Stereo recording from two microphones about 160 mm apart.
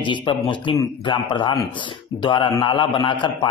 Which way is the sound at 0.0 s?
30° left (ahead or behind).